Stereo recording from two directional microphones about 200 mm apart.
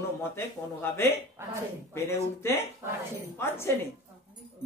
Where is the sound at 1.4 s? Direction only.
10° right (ahead or behind).